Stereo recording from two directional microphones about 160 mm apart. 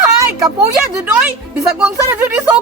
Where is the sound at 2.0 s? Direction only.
10° right (ahead or behind).